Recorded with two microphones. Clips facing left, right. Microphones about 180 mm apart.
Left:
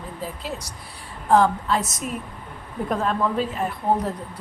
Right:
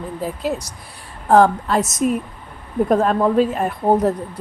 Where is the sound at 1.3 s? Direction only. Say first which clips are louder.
Right 5 dB; 50° right (ahead or behind).